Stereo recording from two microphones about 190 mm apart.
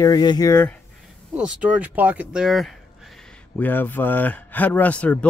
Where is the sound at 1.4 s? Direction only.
5° right (ahead or behind).